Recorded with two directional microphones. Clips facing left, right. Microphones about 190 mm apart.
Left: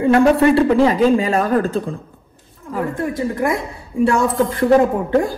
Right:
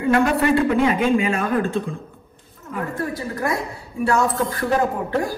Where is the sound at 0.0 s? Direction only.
30° left (ahead or behind).